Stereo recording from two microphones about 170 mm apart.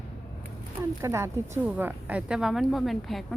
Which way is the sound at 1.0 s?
15° right (ahead or behind).